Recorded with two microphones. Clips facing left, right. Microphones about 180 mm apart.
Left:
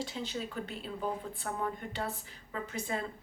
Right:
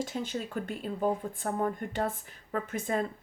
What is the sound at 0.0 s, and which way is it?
A woman's voice, 50° right (ahead or behind).